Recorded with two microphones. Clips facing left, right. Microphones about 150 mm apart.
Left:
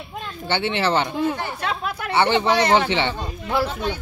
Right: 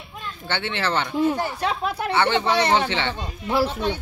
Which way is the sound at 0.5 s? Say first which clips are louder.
Left 4 dB; 15° left (ahead or behind).